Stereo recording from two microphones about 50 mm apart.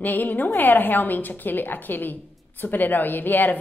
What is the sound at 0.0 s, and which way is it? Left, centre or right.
A woman's voice, left.